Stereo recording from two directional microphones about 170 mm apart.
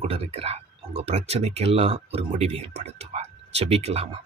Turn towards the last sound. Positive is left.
turn(degrees=-35)  # may be behind; listen again after turning